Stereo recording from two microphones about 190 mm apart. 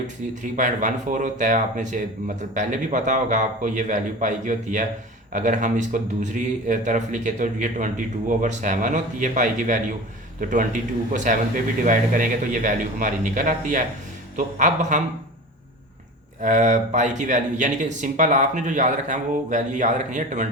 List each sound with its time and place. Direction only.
0.5 s a man's voice: 40° right (ahead or behind)
16.4 s speech: 40° right (ahead or behind)